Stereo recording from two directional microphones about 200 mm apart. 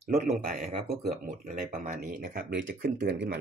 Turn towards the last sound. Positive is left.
turn(degrees=-50)  # may be behind; listen again after turning